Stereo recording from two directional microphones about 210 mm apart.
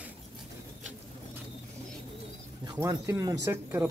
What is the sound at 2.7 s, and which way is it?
Speech, 15° right (ahead or behind).